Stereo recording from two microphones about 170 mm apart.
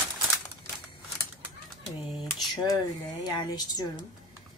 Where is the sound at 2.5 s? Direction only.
25° left (ahead or behind).